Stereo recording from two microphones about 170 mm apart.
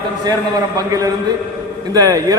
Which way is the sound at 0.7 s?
20° right (ahead or behind).